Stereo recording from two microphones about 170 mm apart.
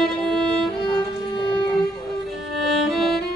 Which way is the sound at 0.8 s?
25° left (ahead or behind).